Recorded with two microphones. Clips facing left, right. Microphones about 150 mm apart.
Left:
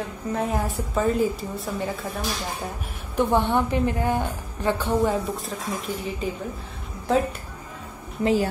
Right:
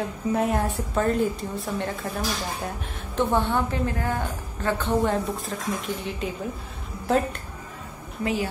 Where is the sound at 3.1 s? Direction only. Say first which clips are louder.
Left 2 dB; 10° left (ahead or behind).